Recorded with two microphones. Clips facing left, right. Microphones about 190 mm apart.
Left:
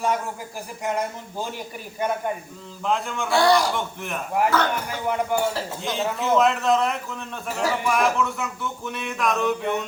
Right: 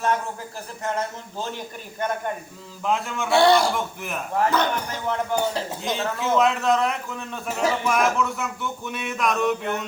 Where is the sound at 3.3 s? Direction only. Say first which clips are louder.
Right 2 dB; 25° right (ahead or behind).